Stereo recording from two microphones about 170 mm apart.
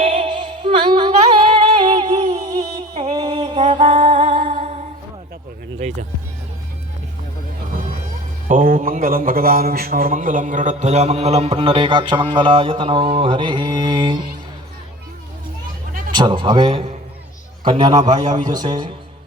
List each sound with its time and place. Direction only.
0.0 s female singing: 35° right (ahead or behind)
3.0 s music: 25° right (ahead or behind)
8.4 s a man's voice: 50° right (ahead or behind); by 14.2 s 25° right (ahead or behind)
16.1 s a man's voice: 25° right (ahead or behind)